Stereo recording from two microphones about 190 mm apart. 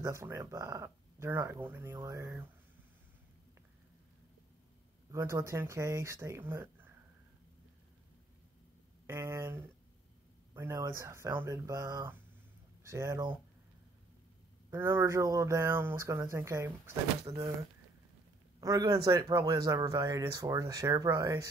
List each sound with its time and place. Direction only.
0.0 s speech: 15° right (ahead or behind)
5.1 s speech: 15° right (ahead or behind)
9.0 s speech: 15° right (ahead or behind)
14.7 s speech: 15° right (ahead or behind)